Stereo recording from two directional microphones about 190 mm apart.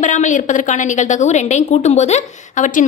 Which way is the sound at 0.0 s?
40° left (ahead or behind).